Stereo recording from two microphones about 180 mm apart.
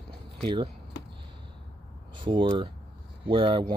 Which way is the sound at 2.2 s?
30° right (ahead or behind).